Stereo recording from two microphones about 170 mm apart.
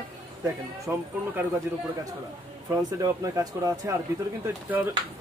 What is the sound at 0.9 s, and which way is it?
Speech, 10° right (ahead or behind).